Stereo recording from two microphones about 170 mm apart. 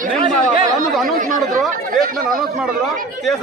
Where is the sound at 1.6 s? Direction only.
Centre (ahead or behind).